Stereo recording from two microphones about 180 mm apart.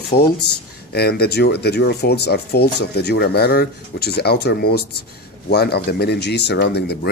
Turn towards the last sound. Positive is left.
turn(degrees=65)  # may be behind; listen again after turning